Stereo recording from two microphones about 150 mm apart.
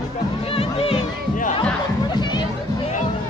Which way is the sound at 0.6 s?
40° left (ahead or behind).